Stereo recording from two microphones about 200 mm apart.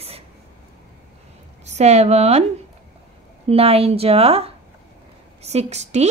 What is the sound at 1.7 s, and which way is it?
Speech, 35° right (ahead or behind).